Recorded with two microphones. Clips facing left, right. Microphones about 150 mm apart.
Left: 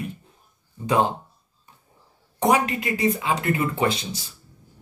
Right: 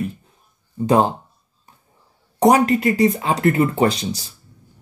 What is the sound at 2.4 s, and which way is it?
Speech, 35° right (ahead or behind).